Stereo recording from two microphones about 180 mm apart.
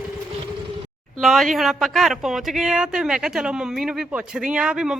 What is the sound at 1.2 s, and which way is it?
Speech, centre (ahead or behind).